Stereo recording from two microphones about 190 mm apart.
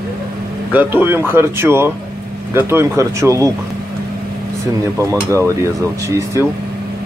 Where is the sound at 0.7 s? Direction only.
10° right (ahead or behind).